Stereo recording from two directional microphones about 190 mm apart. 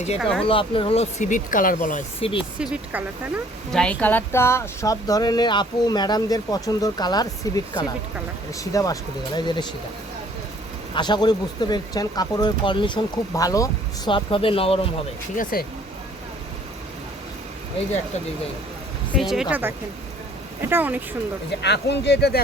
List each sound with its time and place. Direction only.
0.2 s speech: centre (ahead or behind)
0.4 s speech: 25° left (ahead or behind); by 2.0 s 45° left (ahead or behind)
2.6 s speech: 5° right (ahead or behind)
3.7 s speech: 5° left (ahead or behind); by 9.6 s 20° left (ahead or behind)
10.9 s speech: 25° left (ahead or behind)
15.5 s speech: 50° left (ahead or behind)
19.1 s speech: centre (ahead or behind)
21.6 s speech: 65° left (ahead or behind)